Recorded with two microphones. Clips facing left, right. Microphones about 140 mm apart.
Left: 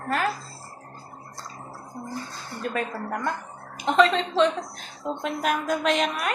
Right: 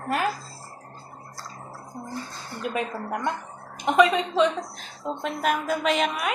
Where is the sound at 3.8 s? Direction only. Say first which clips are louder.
Right 1 dB; 10° right (ahead or behind).